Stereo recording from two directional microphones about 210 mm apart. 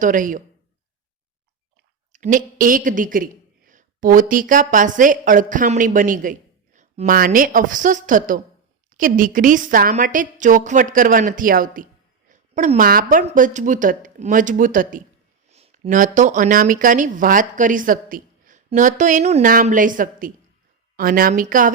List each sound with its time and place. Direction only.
0.0 s speech: 40° right (ahead or behind)
2.1 s speech: 35° right (ahead or behind)